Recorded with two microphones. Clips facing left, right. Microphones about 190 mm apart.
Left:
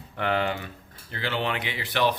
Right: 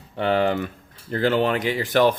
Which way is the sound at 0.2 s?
35° right (ahead or behind).